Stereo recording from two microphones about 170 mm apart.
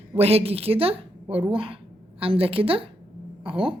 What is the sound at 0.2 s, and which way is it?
A woman's voice, 35° right (ahead or behind).